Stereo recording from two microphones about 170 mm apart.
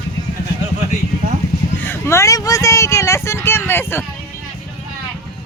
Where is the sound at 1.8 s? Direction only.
15° left (ahead or behind).